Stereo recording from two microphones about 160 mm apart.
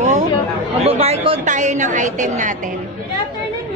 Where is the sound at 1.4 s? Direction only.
50° right (ahead or behind).